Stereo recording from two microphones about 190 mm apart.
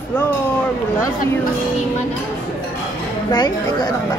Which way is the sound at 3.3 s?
20° left (ahead or behind).